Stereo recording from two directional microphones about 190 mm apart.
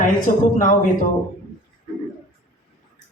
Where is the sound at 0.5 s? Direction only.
45° left (ahead or behind).